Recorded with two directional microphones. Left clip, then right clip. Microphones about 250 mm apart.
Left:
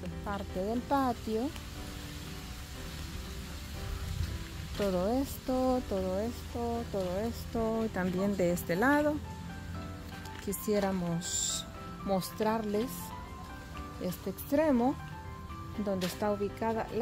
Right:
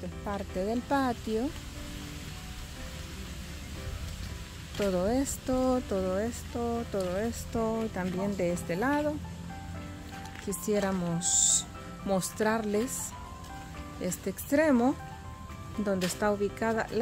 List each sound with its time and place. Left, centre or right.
0.3 s speech: centre
4.7 s speech: centre
7.0 s speech: centre
10.5 s speech: centre
14.0 s speech: centre
16.2 s speech: centre